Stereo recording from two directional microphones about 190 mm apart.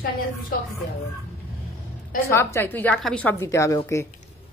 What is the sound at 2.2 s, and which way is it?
A woman's voice, 15° left (ahead or behind).